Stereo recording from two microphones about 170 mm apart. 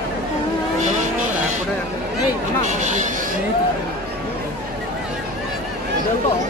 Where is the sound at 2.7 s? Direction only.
45° right (ahead or behind).